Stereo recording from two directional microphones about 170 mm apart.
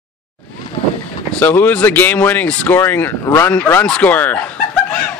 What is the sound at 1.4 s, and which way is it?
Speech, 10° left (ahead or behind).